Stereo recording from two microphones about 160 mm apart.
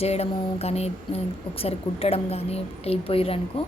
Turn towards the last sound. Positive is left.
turn(degrees=35)  # may be behind; listen again after turning